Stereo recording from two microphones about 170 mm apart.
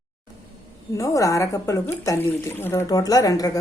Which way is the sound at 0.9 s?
20° left (ahead or behind).